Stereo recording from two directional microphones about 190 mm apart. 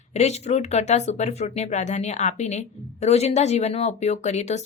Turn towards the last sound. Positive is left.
turn(degrees=35)  # may be behind; listen again after turning